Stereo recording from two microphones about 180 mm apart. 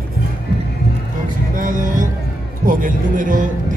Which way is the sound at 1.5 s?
45° right (ahead or behind).